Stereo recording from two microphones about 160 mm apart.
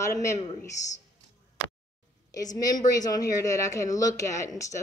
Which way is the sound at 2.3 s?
20° left (ahead or behind).